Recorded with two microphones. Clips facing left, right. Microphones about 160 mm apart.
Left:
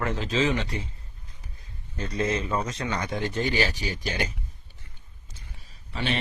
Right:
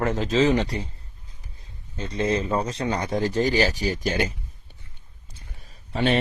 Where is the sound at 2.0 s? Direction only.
30° right (ahead or behind); by 4.3 s 45° right (ahead or behind).